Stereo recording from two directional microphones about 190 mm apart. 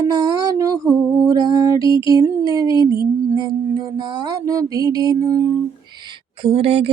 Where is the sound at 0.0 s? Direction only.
20° right (ahead or behind).